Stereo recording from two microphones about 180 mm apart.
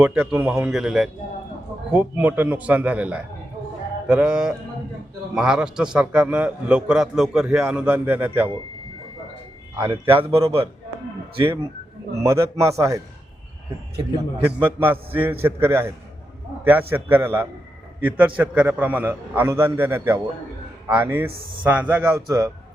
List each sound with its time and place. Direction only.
0.0 s a man's voice: 10° right (ahead or behind)
9.7 s a man's voice: 25° right (ahead or behind)
12.2 s a man's voice: 15° right (ahead or behind)
14.6 s a man's voice: 10° right (ahead or behind)